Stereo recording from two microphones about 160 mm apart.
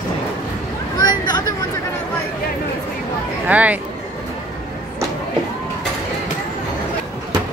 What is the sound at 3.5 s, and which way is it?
Speech, 10° right (ahead or behind).